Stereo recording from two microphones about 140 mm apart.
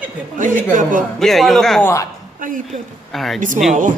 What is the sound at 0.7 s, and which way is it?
Speech, 70° right (ahead or behind).